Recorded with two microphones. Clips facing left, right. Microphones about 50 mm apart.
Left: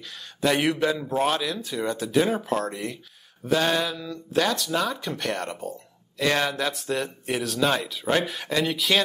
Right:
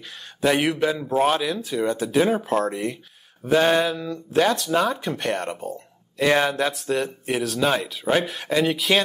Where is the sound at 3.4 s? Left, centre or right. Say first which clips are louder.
Right 5 dB; right.